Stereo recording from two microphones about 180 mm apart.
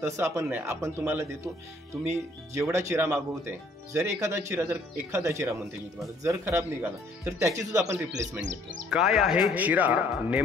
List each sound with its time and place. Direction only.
0.0 s speech: 15° right (ahead or behind)
2.7 s speech: 15° right (ahead or behind)
8.4 s speech: 90° right
8.9 s speech: centre (ahead or behind)